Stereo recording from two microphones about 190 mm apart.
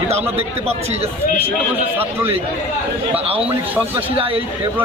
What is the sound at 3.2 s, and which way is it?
Speech, 30° right (ahead or behind).